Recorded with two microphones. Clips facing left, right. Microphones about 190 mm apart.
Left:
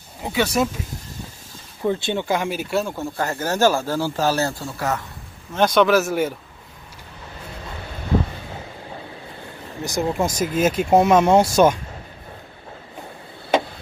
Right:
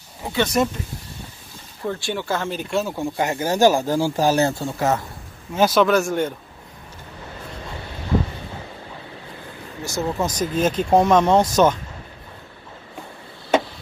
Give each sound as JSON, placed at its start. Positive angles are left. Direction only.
{"t": 0.2, "sound": "speech", "side_deg": 10}
{"t": 1.9, "sound": "speech", "side_deg": 20}
{"t": 3.0, "sound": "speech", "side_deg": -15}
{"t": 5.5, "sound": "speech", "side_deg": -5}
{"t": 9.8, "sound": "speech", "side_deg": 15}